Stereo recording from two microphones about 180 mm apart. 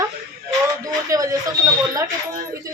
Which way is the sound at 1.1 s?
20° right (ahead or behind).